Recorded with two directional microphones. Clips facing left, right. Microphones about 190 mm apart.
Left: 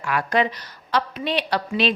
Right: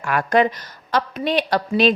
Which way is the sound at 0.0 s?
50° right (ahead or behind).